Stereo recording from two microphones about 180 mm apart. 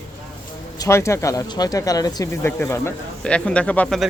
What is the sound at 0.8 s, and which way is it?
Speech, 15° left (ahead or behind).